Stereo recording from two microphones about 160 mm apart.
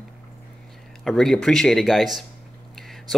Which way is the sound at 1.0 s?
Centre (ahead or behind).